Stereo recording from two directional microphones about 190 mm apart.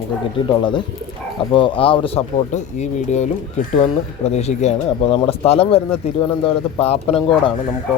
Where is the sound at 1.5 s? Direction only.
25° left (ahead or behind).